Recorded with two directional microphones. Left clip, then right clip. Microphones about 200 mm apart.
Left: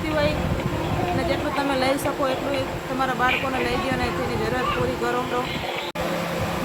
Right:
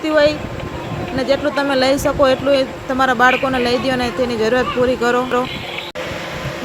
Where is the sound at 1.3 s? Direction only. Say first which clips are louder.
Right 7 dB; 35° right (ahead or behind).